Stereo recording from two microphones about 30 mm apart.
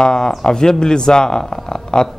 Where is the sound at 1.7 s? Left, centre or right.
Left.